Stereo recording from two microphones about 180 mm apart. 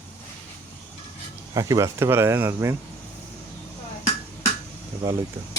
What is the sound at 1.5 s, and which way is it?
Speech, 20° right (ahead or behind).